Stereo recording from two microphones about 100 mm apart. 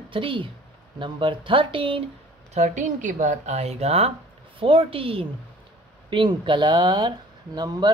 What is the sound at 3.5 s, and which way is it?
Speech, 90° right.